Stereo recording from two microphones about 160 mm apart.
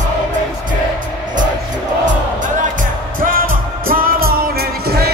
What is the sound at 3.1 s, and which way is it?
Music, 60° right (ahead or behind).